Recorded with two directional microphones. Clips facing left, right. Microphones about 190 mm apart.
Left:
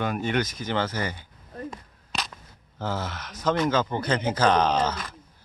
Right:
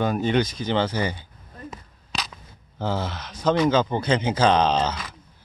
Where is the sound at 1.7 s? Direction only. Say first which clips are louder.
Right 1 dB; centre (ahead or behind).